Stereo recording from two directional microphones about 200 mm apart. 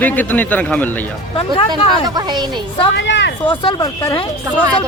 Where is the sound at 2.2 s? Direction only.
20° right (ahead or behind).